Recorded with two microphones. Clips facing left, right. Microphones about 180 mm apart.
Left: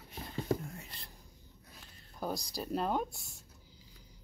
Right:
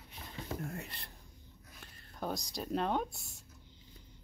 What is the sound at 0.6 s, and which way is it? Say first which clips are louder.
Whispering: right 5 dB; 65° right (ahead or behind).